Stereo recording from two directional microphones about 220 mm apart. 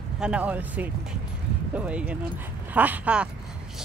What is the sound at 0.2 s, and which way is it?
Speech, 5° right (ahead or behind).